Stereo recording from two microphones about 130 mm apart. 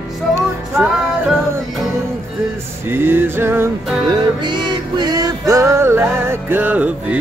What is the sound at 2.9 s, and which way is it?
Music, 15° right (ahead or behind).